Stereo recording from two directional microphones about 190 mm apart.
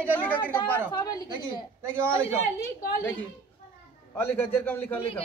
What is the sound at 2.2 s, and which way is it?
Speech, 40° left (ahead or behind).